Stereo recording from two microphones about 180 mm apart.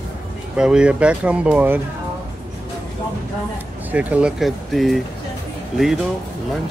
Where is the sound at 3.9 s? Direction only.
10° right (ahead or behind).